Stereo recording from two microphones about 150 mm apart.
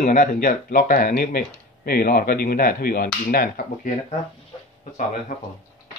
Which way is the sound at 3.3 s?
70° left (ahead or behind).